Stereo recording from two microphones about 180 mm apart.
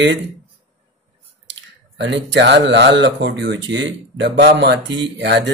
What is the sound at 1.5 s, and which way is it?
Speech, 75° right (ahead or behind).